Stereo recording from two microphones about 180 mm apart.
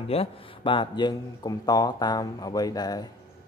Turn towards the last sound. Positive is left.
turn(degrees=20)  # may be behind; listen again after turning